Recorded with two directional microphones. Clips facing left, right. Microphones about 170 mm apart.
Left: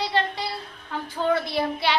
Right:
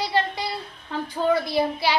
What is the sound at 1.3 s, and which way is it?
Speech, centre (ahead or behind).